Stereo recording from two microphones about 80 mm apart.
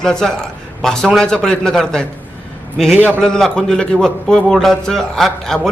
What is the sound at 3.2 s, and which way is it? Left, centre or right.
A man's voice, centre.